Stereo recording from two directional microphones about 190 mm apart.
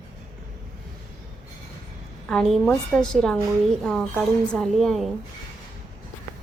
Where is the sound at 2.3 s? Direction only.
5° left (ahead or behind).